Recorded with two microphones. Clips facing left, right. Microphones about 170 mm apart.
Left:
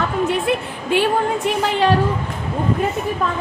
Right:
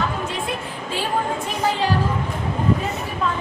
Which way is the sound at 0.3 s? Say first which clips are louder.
Left 7 dB; 65° left (ahead or behind).